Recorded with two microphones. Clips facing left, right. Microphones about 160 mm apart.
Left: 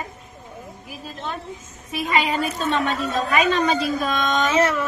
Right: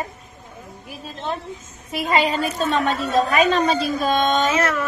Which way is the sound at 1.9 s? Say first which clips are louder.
Right 2 dB; 30° right (ahead or behind).